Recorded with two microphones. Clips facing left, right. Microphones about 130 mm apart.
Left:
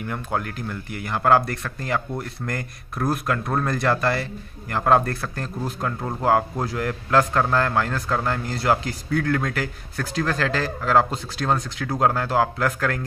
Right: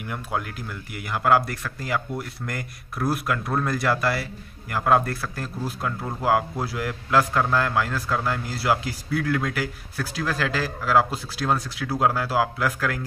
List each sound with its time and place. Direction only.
0.0 s speech: 5° right (ahead or behind)
6.6 s speech: 5° right (ahead or behind)